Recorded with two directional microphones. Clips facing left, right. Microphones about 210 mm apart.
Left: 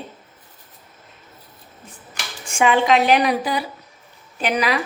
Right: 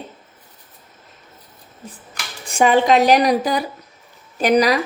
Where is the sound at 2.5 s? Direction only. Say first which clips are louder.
Right 2 dB; 40° right (ahead or behind).